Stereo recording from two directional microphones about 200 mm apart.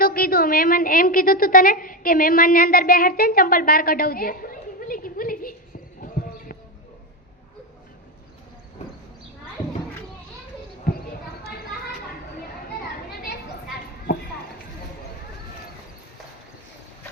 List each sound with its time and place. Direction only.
0.0 s a woman's voice: 45° left (ahead or behind)
10.9 s basketball bounce: 50° left (ahead or behind)